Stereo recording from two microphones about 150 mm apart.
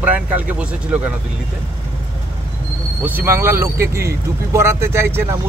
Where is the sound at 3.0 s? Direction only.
15° right (ahead or behind).